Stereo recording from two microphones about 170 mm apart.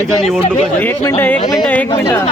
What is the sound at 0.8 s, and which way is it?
Speech, 15° left (ahead or behind).